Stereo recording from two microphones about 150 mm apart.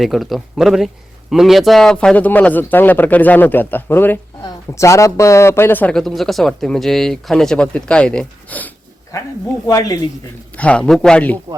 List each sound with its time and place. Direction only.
0.0 s speech: centre (ahead or behind)
9.6 s speech: 25° left (ahead or behind)
10.6 s speech: 5° left (ahead or behind)